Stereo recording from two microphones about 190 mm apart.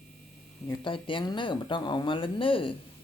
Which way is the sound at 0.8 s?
25° left (ahead or behind).